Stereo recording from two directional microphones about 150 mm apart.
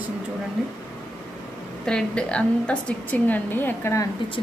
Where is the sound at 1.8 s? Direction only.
5° left (ahead or behind).